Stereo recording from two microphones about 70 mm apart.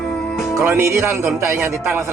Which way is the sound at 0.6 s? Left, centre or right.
Right.